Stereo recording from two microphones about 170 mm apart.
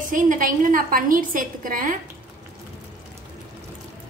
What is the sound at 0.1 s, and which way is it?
A woman's voice, 50° right (ahead or behind).